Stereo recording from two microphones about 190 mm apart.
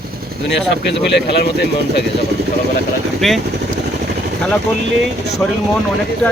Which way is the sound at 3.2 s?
Centre (ahead or behind).